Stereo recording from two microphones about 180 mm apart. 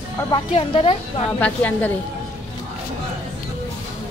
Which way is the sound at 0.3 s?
30° left (ahead or behind).